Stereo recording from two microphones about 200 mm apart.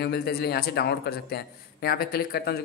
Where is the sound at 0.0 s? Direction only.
50° left (ahead or behind).